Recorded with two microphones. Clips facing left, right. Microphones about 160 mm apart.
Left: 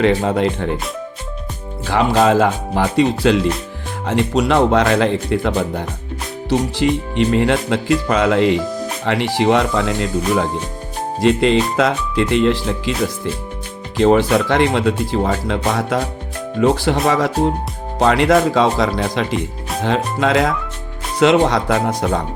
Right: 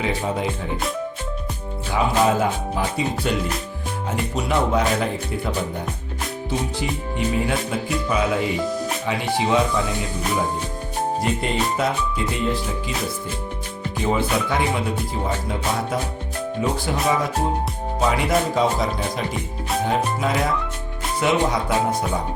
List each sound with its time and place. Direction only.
0.0 s speech: 70° left (ahead or behind)
1.9 s speech: 75° left (ahead or behind)
11.2 s speech: 90° left
13.9 s speech: 85° left